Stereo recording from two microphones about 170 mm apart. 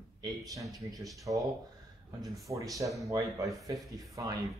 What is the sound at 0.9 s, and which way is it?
Speech, 20° right (ahead or behind).